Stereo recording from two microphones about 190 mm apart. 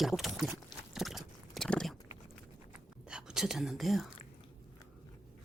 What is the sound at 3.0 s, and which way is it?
Whispering, 5° right (ahead or behind).